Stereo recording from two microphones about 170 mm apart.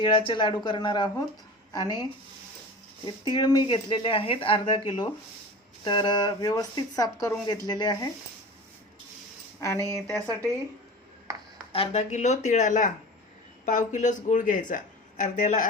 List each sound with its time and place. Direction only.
0.0 s speech: 30° left (ahead or behind)
3.2 s speech: 25° left (ahead or behind)
9.6 s speech: 15° left (ahead or behind)
11.7 s speech: 35° left (ahead or behind)